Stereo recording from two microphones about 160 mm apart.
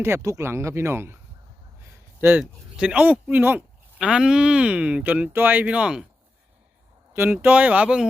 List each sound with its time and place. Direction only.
0.0 s speech: 15° right (ahead or behind)
2.4 s speech: 5° right (ahead or behind)
7.1 s speech: 15° right (ahead or behind)